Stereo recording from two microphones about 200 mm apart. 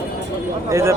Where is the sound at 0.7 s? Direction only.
15° right (ahead or behind).